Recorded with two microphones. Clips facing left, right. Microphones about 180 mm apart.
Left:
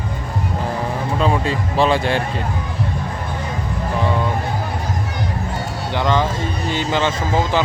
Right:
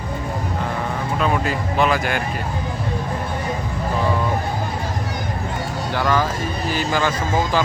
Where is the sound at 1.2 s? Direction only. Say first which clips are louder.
Left 2 dB; 30° left (ahead or behind).